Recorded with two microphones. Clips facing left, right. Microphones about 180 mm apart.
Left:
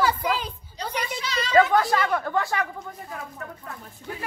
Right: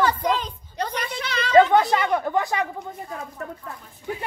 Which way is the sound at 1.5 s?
25° right (ahead or behind).